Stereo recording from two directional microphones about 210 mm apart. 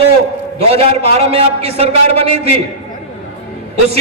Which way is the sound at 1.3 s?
30° right (ahead or behind).